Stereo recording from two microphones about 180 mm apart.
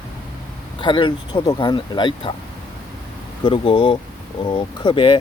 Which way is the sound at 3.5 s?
25° left (ahead or behind).